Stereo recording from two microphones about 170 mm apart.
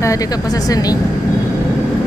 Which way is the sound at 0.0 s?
20° left (ahead or behind).